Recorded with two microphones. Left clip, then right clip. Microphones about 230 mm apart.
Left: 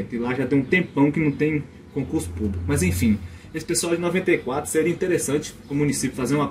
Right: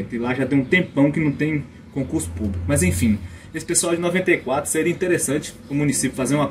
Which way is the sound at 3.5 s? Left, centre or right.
Centre.